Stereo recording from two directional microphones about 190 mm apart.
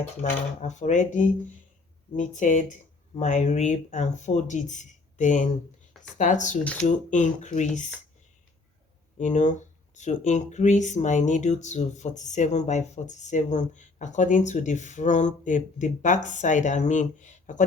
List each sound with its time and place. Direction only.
0.2 s speech: 40° left (ahead or behind)
9.1 s speech: 40° left (ahead or behind)